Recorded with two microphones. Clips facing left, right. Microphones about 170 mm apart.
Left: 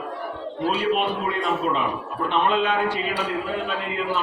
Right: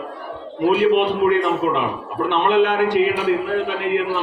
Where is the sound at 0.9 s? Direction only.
65° right (ahead or behind).